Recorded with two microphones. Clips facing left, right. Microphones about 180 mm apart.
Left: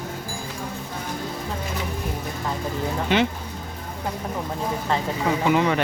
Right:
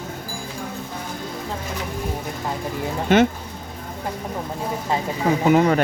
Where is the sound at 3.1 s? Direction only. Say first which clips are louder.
Right 6 dB; 45° right (ahead or behind).